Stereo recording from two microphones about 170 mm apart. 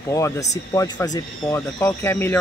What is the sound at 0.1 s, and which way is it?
Speech, 20° left (ahead or behind).